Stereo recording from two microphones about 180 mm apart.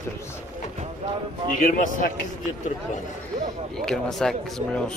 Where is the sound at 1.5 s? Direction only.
50° left (ahead or behind).